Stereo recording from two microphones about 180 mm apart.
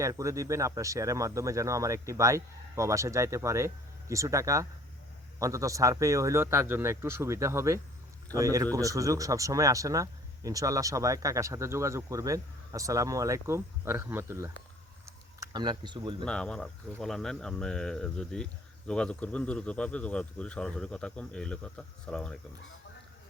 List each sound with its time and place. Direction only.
0.0 s speech: 15° right (ahead or behind)
16.2 s speech: 5° left (ahead or behind)